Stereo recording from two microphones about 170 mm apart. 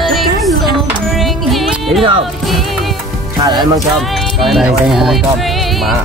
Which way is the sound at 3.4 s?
25° right (ahead or behind).